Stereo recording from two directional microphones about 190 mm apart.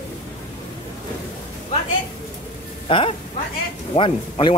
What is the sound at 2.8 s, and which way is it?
Speech, 30° left (ahead or behind).